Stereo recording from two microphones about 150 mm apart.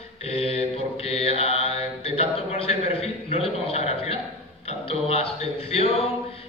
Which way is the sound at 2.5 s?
45° left (ahead or behind).